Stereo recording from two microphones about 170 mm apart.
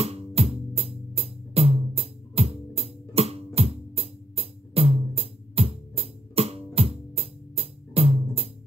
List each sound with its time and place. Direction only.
0.0 s music: 35° right (ahead or behind)